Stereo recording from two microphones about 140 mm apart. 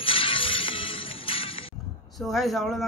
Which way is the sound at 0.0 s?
40° left (ahead or behind).